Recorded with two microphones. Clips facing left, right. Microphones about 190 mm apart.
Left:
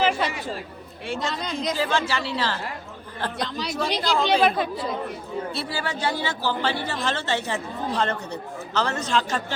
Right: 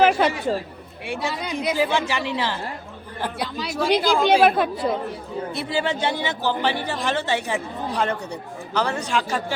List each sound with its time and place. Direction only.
0.0 s speech: 60° right (ahead or behind)
1.0 s speech: 10° right (ahead or behind)
4.4 s speech: 55° right (ahead or behind)
5.5 s speech: 20° right (ahead or behind)